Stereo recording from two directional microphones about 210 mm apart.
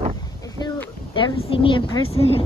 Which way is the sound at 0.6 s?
20° left (ahead or behind).